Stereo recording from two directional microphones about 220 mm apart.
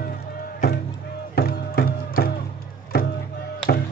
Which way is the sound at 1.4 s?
45° left (ahead or behind).